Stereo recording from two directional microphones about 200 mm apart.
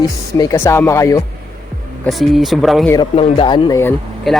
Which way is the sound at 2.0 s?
Centre (ahead or behind).